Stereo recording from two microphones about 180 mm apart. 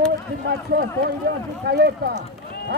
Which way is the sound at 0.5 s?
65° right (ahead or behind).